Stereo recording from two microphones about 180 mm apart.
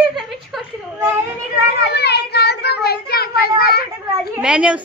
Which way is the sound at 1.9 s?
65° left (ahead or behind).